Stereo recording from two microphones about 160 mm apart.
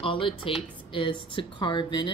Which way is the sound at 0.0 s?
35° left (ahead or behind).